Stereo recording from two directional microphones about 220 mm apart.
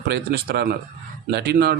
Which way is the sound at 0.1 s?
45° right (ahead or behind).